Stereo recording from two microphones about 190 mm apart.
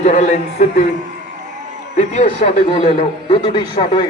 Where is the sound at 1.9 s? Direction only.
35° left (ahead or behind).